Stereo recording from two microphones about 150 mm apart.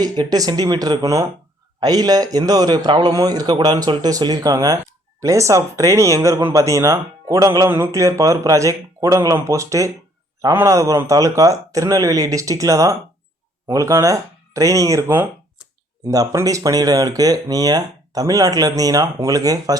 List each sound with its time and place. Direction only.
0.0 s speech: 25° right (ahead or behind)